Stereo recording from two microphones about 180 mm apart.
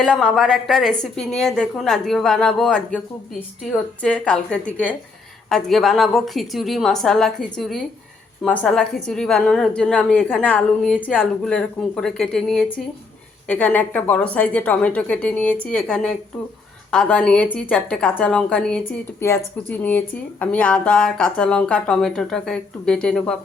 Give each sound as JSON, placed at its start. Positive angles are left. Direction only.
{"t": 0.0, "sound": "speech", "side_deg": 0}
{"t": 4.0, "sound": "a woman's voice", "side_deg": 5}